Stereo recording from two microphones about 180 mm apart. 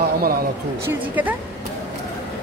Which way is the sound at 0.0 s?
55° right (ahead or behind).